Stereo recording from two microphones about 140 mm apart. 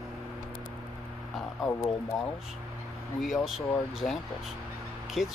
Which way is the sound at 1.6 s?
20° left (ahead or behind).